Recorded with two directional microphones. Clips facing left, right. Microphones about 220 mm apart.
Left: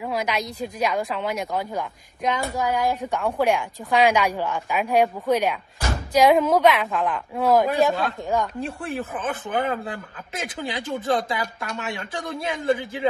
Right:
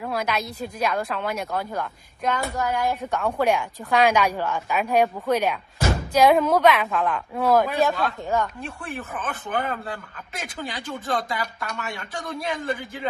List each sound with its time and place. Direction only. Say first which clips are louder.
0.0 s a woman's voice: left 1 dB; 10° left (ahead or behind)
8.5 s speech: left 5 dB; 30° left (ahead or behind)